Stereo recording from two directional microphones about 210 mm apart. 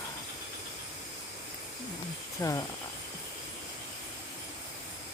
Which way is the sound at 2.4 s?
15° left (ahead or behind).